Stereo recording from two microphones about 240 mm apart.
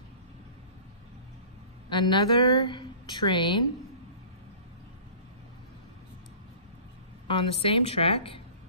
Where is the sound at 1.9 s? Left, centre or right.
Centre.